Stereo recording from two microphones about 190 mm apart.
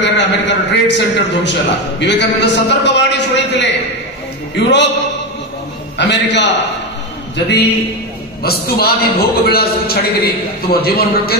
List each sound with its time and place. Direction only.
0.0 s a man's voice: 65° left (ahead or behind)
5.9 s a man's voice: 65° left (ahead or behind)
8.4 s a man's voice: 55° left (ahead or behind)